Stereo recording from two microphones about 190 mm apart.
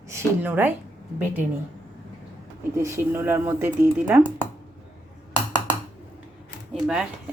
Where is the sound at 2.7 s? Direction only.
15° right (ahead or behind).